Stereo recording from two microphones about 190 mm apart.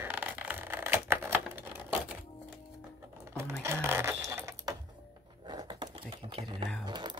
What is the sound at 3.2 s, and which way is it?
Sewing machine, 15° right (ahead or behind).